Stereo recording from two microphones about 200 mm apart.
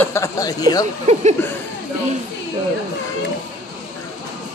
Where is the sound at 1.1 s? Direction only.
35° right (ahead or behind).